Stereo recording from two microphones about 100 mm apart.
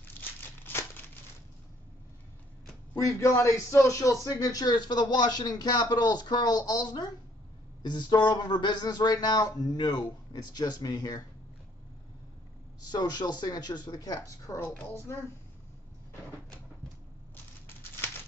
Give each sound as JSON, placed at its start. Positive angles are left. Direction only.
{"t": 0.2, "sound": "crumpling", "side_deg": 20}
{"t": 3.0, "sound": "speech", "side_deg": 30}
{"t": 12.9, "sound": "speech", "side_deg": 45}